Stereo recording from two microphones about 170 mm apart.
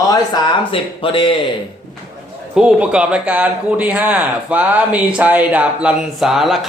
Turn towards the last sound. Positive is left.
turn(degrees=0)  # may be behind; listen again after turning